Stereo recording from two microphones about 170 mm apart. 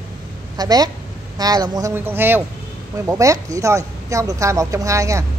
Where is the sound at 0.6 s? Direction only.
20° right (ahead or behind).